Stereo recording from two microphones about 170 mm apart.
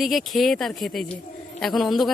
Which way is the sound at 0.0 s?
Centre (ahead or behind).